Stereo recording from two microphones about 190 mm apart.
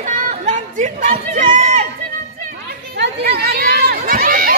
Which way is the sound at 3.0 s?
55° right (ahead or behind).